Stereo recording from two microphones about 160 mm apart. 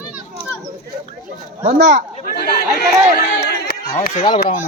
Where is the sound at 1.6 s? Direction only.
50° right (ahead or behind); by 2.8 s 65° right (ahead or behind).